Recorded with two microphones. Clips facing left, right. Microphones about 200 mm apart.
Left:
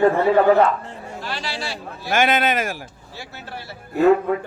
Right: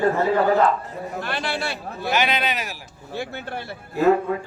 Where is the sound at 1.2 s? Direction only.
55° right (ahead or behind).